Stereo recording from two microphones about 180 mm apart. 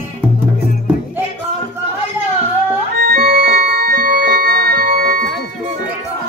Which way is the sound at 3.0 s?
60° right (ahead or behind).